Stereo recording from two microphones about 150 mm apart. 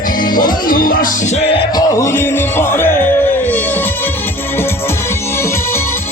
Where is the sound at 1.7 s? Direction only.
20° left (ahead or behind).